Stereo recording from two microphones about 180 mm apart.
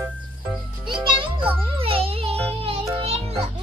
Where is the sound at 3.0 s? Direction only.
35° right (ahead or behind).